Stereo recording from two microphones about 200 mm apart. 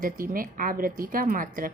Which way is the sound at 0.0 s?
45° right (ahead or behind).